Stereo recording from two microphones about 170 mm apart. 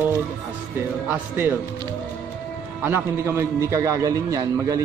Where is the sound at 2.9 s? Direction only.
15° right (ahead or behind).